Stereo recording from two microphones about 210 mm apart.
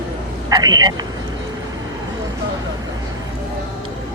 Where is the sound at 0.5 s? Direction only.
20° right (ahead or behind).